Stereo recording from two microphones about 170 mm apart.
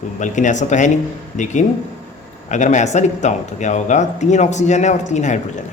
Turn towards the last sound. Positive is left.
turn(degrees=45)  # may be behind; listen again after turning